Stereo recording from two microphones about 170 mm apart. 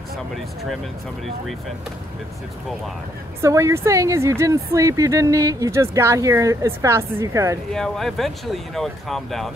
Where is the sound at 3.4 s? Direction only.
15° right (ahead or behind).